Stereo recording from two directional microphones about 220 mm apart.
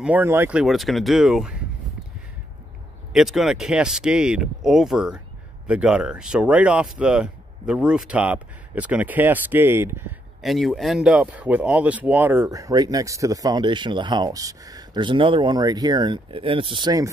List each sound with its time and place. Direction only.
0.0 s speech: 10° right (ahead or behind)
3.1 s speech: centre (ahead or behind)
10.4 s speech: centre (ahead or behind); by 17.1 s 15° right (ahead or behind)